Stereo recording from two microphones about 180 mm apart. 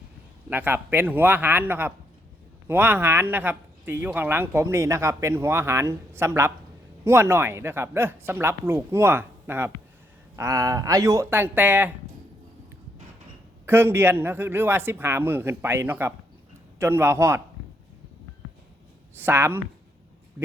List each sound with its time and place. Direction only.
0.5 s speech: 10° right (ahead or behind)
13.7 s speech: 10° right (ahead or behind)
19.1 s speech: 10° right (ahead or behind)